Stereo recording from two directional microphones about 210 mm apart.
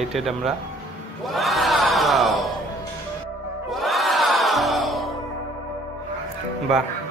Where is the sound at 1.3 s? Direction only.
Centre (ahead or behind).